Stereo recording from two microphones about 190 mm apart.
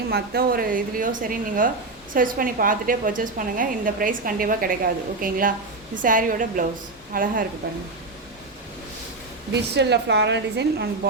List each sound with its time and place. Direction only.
0.1 s a woman's voice: 55° right (ahead or behind)
9.5 s a woman's voice: 65° right (ahead or behind)